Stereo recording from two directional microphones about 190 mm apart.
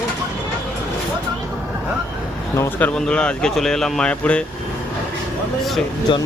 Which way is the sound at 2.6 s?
10° left (ahead or behind).